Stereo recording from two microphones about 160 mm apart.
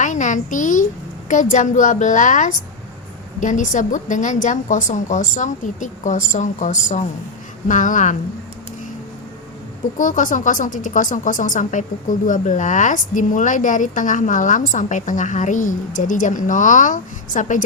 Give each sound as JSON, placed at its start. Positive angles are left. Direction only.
{"t": 0.0, "sound": "a woman's voice", "side_deg": 50}
{"t": 10.0, "sound": "a woman's voice", "side_deg": 55}